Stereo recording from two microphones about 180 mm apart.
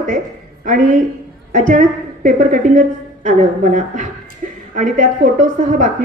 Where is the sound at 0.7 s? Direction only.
45° right (ahead or behind).